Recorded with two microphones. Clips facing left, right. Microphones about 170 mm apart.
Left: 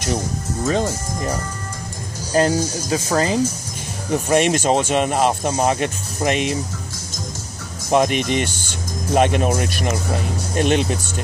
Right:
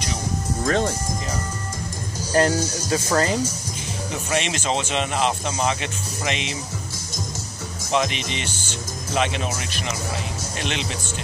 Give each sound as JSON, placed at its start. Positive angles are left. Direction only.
{"t": 0.7, "sound": "speech", "side_deg": 5}
{"t": 2.3, "sound": "speech", "side_deg": 20}
{"t": 4.1, "sound": "speech", "side_deg": 50}
{"t": 7.9, "sound": "speech", "side_deg": 50}